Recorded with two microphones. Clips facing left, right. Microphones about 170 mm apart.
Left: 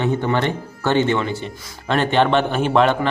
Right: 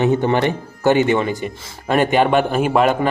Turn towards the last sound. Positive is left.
turn(degrees=-10)  # may be behind; listen again after turning